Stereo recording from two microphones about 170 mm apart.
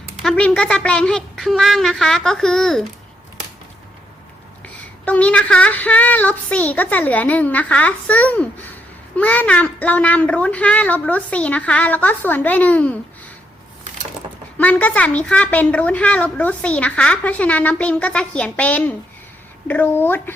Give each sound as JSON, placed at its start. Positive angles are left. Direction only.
{"t": 0.2, "sound": "a woman's voice", "side_deg": 5}
{"t": 4.6, "sound": "a woman's voice", "side_deg": 10}
{"t": 14.6, "sound": "a woman's voice", "side_deg": 10}